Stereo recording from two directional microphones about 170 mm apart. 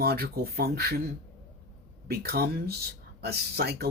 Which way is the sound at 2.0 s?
65° right (ahead or behind).